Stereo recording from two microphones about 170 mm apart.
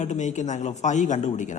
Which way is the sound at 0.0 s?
45° left (ahead or behind).